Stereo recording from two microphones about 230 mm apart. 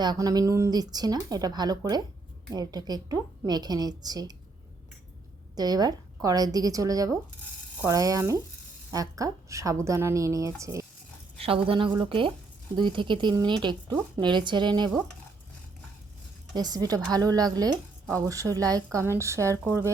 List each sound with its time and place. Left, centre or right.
0.0 s a woman's voice: centre
5.5 s a woman's voice: centre
11.3 s a woman's voice: right
16.6 s a woman's voice: centre